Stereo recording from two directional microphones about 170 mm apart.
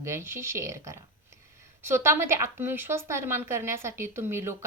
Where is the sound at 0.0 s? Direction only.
15° right (ahead or behind).